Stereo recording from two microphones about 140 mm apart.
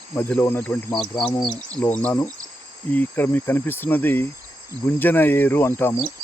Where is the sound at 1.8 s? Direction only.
10° left (ahead or behind).